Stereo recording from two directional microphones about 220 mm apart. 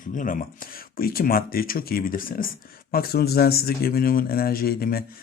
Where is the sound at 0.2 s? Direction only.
35° left (ahead or behind).